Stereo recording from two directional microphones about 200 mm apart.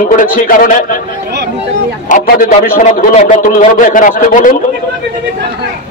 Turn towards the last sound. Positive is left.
turn(degrees=45)  # may be behind; listen again after turning